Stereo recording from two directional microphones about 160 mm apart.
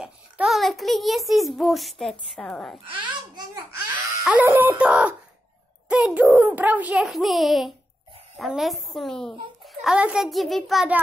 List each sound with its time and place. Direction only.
0.0 s a child's voice: centre (ahead or behind)
2.9 s babbling: 30° right (ahead or behind)
4.2 s a child's voice: 10° right (ahead or behind)